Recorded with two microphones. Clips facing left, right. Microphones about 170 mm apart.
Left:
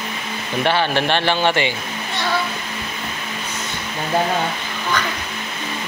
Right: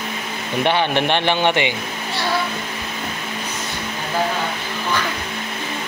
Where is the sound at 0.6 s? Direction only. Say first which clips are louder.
Even; 20° right (ahead or behind).